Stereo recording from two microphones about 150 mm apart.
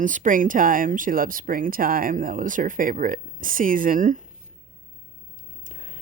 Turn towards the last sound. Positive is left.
turn(degrees=-60)  # may be behind; listen again after turning